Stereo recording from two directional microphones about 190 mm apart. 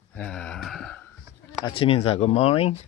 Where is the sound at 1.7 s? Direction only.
30° left (ahead or behind).